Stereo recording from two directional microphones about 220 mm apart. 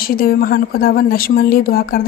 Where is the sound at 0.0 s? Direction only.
45° left (ahead or behind).